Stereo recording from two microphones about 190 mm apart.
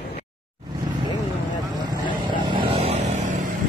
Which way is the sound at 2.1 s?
25° right (ahead or behind).